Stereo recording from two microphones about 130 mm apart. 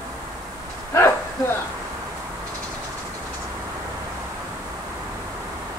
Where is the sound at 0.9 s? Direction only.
20° left (ahead or behind).